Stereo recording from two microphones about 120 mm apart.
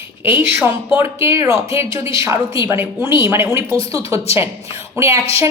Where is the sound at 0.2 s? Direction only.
15° right (ahead or behind).